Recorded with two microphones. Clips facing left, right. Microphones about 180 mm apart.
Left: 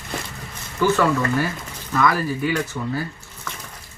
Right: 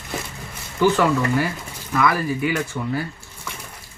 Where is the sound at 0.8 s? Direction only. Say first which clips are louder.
Right 1 dB; 15° right (ahead or behind).